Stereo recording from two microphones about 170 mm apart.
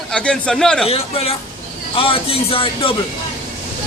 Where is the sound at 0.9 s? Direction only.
35° left (ahead or behind).